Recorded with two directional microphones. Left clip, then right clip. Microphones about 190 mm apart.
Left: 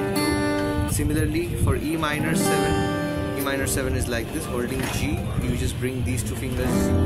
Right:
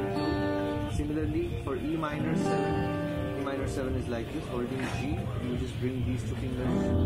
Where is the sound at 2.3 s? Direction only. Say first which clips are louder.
Left 6 dB; 25° left (ahead or behind).